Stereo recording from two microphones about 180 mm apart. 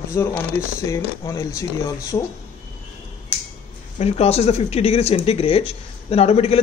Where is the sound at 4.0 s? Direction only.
35° left (ahead or behind).